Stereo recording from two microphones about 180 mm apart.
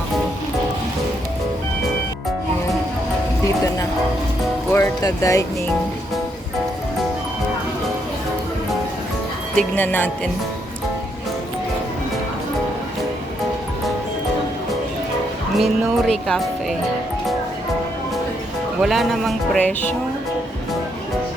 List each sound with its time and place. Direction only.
4.7 s speech: 15° left (ahead or behind)
9.6 s speech: 10° left (ahead or behind)
15.5 s speech: centre (ahead or behind)
18.8 s speech: centre (ahead or behind)